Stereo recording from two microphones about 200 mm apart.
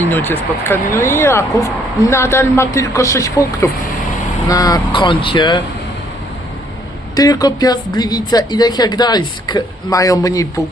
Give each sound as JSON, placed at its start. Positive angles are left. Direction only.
{"t": 0.1, "sound": "speech", "side_deg": 10}
{"t": 7.2, "sound": "speech", "side_deg": 20}